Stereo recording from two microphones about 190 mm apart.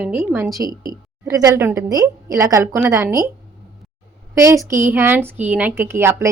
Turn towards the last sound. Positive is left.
turn(degrees=-15)  # may be behind; listen again after turning